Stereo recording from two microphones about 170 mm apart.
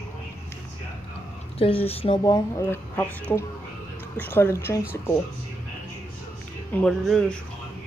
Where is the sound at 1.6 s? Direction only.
35° left (ahead or behind); by 4.8 s 15° left (ahead or behind).